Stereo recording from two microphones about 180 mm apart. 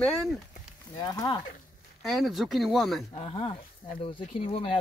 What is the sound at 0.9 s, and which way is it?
Speech, 20° left (ahead or behind).